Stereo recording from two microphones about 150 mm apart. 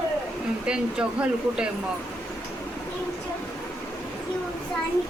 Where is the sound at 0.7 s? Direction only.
5° right (ahead or behind).